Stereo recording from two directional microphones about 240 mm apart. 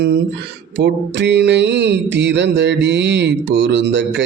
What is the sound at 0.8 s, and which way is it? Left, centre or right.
Music, right.